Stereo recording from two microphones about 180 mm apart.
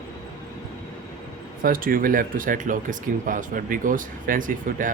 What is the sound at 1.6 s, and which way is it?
Speech, 50° right (ahead or behind).